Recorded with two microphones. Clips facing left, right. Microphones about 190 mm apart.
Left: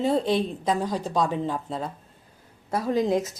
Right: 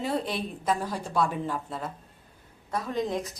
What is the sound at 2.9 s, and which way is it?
Speech, 35° left (ahead or behind).